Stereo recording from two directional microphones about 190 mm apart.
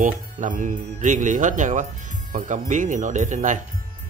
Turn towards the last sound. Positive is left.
turn(degrees=-40)  # may be behind; listen again after turning